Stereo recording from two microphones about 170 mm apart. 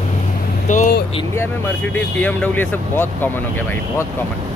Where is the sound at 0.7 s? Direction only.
50° left (ahead or behind).